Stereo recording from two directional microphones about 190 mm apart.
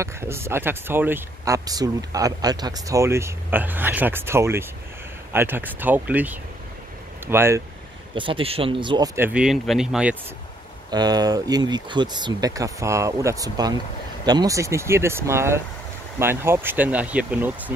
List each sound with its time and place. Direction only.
0.0 s speech: 15° right (ahead or behind)
8.1 s speech: 25° right (ahead or behind); by 10.1 s 5° right (ahead or behind)
10.9 s speech: 20° right (ahead or behind)